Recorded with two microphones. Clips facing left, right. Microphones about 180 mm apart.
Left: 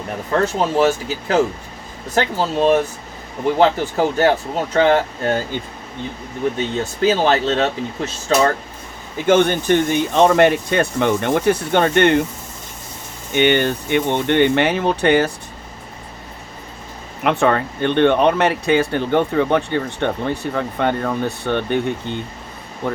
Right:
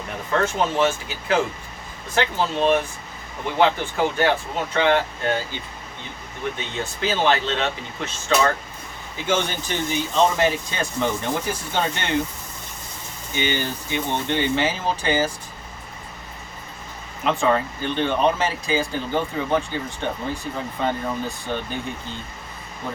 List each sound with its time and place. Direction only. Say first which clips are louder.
0.4 s speech: left 5 dB; 40° left (ahead or behind)
6.7 s speech: left 6 dB; 40° left (ahead or behind)
9.2 s speech: left 9 dB; 55° left (ahead or behind)
13.3 s speech: left 9 dB; 65° left (ahead or behind)
17.2 s speech: left 4 dB; 65° left (ahead or behind)